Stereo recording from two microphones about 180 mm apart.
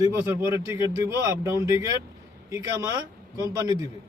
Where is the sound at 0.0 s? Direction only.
15° right (ahead or behind).